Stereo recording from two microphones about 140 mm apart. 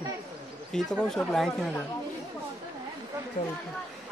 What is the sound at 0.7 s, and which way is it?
Speech, 5° left (ahead or behind).